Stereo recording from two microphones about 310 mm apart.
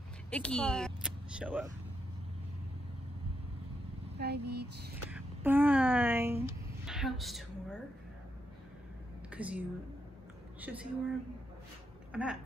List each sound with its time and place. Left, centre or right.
0.3 s speech: centre
4.2 s a sound: right
5.1 s a woman's voice: centre
9.3 s a woman's voice: centre
12.1 s speech: centre